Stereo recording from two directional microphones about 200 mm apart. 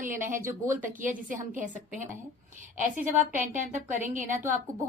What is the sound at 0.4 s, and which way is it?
Speech, 10° right (ahead or behind).